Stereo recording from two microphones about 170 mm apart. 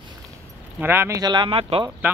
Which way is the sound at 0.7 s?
15° right (ahead or behind).